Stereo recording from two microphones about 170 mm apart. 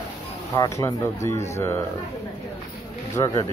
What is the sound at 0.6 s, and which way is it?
Speech, 20° left (ahead or behind).